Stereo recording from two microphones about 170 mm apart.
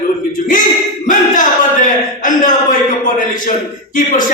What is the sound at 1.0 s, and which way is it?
Speech, 50° left (ahead or behind).